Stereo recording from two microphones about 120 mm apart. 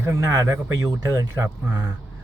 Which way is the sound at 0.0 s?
25° right (ahead or behind).